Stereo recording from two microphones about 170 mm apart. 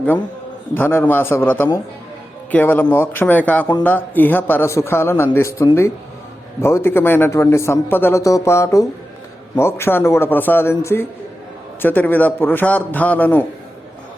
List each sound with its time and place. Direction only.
0.7 s a man's voice: 10° left (ahead or behind)